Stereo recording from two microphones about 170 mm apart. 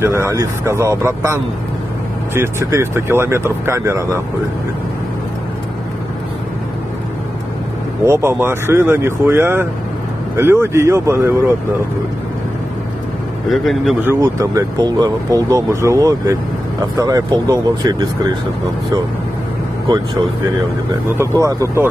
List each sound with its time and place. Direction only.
0.0 s speech: 15° right (ahead or behind)
8.0 s speech: 15° right (ahead or behind)
13.5 s a man's voice: centre (ahead or behind)
14.0 s speech: 20° right (ahead or behind)
21.2 s speech: 20° right (ahead or behind)